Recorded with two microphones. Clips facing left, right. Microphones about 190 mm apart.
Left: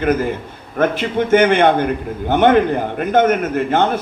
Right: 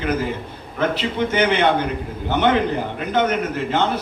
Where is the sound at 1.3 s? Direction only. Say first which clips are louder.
Left 6 dB; 50° left (ahead or behind).